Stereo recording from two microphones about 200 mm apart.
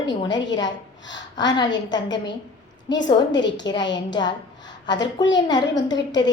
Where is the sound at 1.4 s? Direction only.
20° left (ahead or behind).